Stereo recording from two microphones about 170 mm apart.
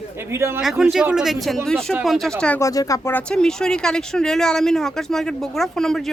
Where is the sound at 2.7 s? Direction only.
20° left (ahead or behind).